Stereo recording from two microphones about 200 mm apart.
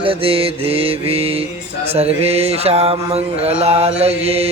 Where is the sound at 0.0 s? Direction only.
25° right (ahead or behind).